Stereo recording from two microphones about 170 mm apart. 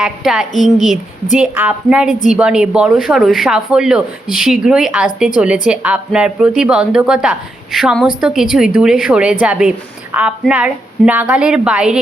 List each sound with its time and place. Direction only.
0.0 s a woman's voice: 5° right (ahead or behind)
0.5 s a woman's voice: 50° left (ahead or behind)
1.4 s a woman's voice: 10° right (ahead or behind)
2.0 s a woman's voice: 45° left (ahead or behind)
2.3 s a woman's voice: 5° right (ahead or behind)